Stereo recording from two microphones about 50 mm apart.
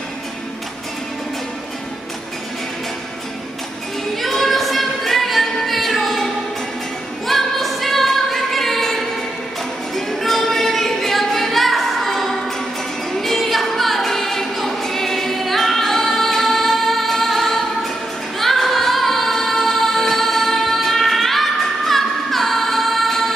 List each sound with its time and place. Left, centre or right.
4.1 s choir: centre
7.2 s singing: centre
13.1 s a capella: centre
18.4 s music: centre